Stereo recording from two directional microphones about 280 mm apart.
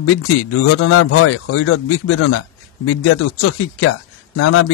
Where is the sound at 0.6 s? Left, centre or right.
Left.